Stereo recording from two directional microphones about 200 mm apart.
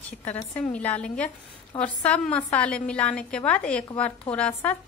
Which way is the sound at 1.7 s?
25° left (ahead or behind).